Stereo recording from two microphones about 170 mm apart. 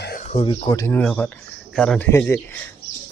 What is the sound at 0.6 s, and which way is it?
Speech, 20° left (ahead or behind).